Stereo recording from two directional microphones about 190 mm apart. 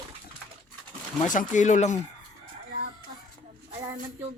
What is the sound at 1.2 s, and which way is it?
Speech, 40° left (ahead or behind).